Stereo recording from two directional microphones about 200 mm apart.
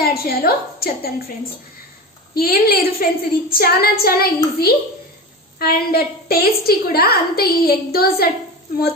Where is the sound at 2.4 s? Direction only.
50° left (ahead or behind).